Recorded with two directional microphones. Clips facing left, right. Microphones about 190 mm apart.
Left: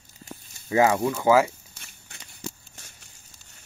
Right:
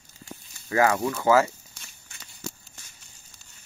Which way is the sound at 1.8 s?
60° left (ahead or behind).